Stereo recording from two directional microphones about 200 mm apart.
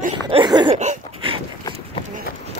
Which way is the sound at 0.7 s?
30° right (ahead or behind).